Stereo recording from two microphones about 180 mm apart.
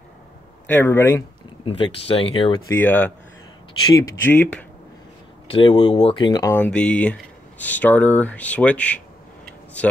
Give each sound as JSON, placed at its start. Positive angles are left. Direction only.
{"t": 0.7, "sound": "speech", "side_deg": 10}
{"t": 1.6, "sound": "speech", "side_deg": 30}
{"t": 2.7, "sound": "speech", "side_deg": 10}
{"t": 5.5, "sound": "speech", "side_deg": 30}
{"t": 6.5, "sound": "speech", "side_deg": 5}